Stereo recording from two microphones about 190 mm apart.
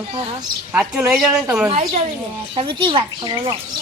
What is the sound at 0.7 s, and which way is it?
Speech, 5° right (ahead or behind).